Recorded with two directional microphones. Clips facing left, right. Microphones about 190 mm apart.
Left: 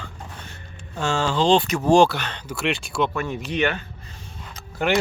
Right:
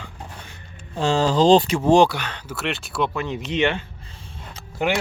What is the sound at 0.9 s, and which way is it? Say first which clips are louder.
Speech: right 4 dB; 35° right (ahead or behind).